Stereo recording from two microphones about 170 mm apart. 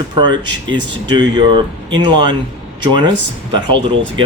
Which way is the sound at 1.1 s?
30° right (ahead or behind).